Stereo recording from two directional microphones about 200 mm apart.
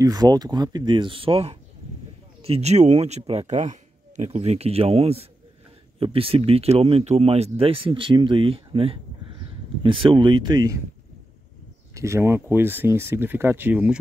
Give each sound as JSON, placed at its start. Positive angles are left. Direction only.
{"t": 0.0, "sound": "speech", "side_deg": -20}
{"t": 11.9, "sound": "speech", "side_deg": -15}